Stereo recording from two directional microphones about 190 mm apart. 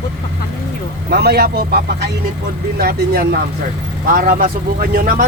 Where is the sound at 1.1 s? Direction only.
60° right (ahead or behind).